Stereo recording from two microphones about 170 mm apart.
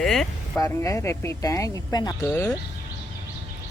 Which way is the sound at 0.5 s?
20° left (ahead or behind).